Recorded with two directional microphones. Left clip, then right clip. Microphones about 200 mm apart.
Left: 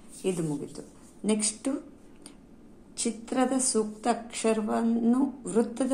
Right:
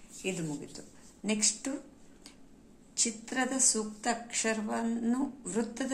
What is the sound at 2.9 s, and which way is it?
A woman's voice, 5° left (ahead or behind).